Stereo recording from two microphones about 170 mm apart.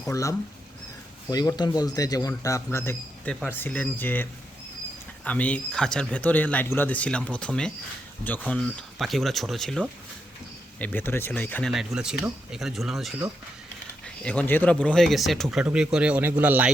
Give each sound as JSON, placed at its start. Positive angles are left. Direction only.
{"t": 0.1, "sound": "speech", "side_deg": 20}
{"t": 11.7, "sound": "speech", "side_deg": 0}
{"t": 14.3, "sound": "speech", "side_deg": 10}